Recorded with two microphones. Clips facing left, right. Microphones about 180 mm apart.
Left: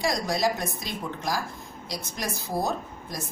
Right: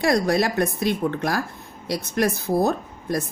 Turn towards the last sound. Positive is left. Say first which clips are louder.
# right 7 dB
turn(degrees=-60)  # may be behind; listen again after turning